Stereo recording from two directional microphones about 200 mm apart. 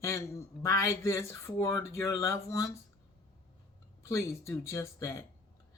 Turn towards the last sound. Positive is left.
turn(degrees=15)  # may be behind; listen again after turning